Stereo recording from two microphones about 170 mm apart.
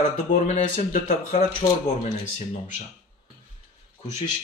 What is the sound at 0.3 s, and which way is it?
Speech, 45° left (ahead or behind).